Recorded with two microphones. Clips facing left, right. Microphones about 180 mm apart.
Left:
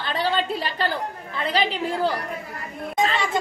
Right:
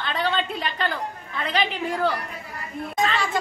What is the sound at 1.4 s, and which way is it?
Speech, 30° left (ahead or behind).